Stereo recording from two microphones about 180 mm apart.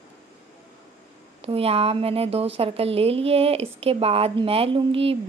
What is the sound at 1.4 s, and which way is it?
A woman's voice, 35° right (ahead or behind).